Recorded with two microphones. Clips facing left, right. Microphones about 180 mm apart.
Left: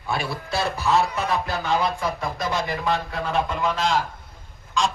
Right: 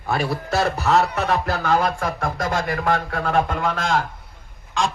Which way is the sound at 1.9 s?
70° right (ahead or behind).